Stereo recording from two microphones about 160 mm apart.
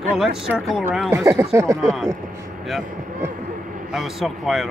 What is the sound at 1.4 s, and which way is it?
Speech, 20° right (ahead or behind).